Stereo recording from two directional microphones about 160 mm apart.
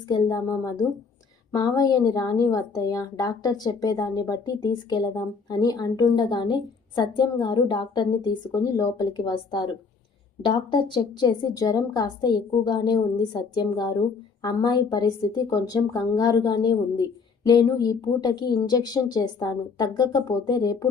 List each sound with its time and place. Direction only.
0.1 s a woman's voice: 20° left (ahead or behind)